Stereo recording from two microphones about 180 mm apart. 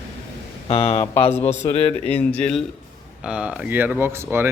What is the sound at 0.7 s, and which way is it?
Speech, 30° left (ahead or behind).